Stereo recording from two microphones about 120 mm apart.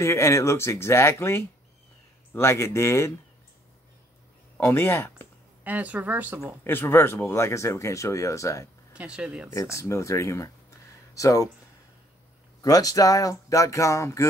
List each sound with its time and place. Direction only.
0.0 s speech: 25° left (ahead or behind)
4.6 s speech: 20° left (ahead or behind)
5.6 s speech: 15° right (ahead or behind)
6.4 s speech: 20° left (ahead or behind)
8.9 s speech: 10° right (ahead or behind)
9.5 s speech: 25° left (ahead or behind)
12.6 s speech: 30° left (ahead or behind)